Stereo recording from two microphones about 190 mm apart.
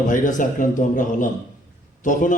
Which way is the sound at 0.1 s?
45° left (ahead or behind).